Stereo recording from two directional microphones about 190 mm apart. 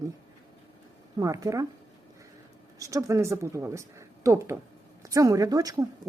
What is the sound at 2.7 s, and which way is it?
Speech, 15° right (ahead or behind).